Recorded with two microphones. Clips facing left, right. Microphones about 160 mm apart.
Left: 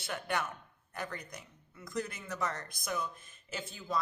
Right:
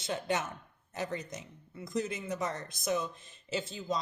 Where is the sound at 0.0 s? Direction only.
20° right (ahead or behind).